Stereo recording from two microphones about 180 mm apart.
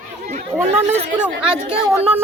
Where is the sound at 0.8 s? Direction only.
35° right (ahead or behind).